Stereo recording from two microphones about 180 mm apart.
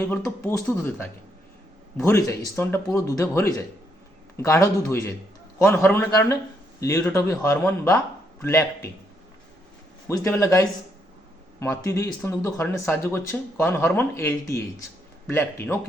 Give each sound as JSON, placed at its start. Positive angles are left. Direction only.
{"t": 0.0, "sound": "speech", "side_deg": 10}
{"t": 10.1, "sound": "speech", "side_deg": 15}